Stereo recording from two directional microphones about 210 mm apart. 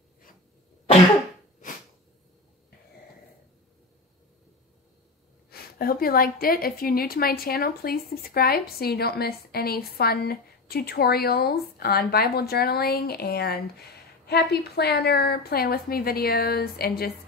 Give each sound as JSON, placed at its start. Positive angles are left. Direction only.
{"t": 5.5, "sound": "a woman's voice", "side_deg": 45}